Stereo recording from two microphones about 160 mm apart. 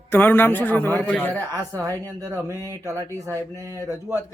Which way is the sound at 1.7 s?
20° right (ahead or behind).